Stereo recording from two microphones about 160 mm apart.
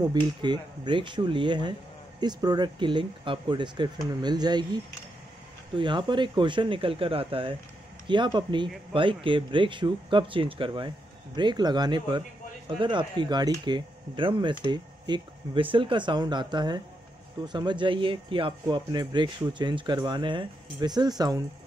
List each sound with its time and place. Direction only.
0.0 s speech: 25° right (ahead or behind)
5.8 s speech: 30° right (ahead or behind)